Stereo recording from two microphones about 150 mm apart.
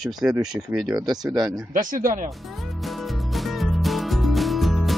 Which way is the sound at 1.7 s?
65° right (ahead or behind).